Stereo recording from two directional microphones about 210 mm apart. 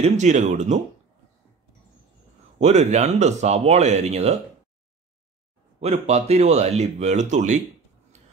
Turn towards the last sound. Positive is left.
turn(degrees=-35)  # may be behind; listen again after turning